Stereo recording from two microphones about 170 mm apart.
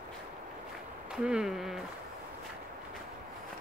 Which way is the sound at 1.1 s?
5° right (ahead or behind).